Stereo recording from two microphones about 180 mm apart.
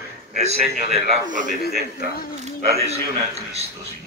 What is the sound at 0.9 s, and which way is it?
Speech, 45° right (ahead or behind).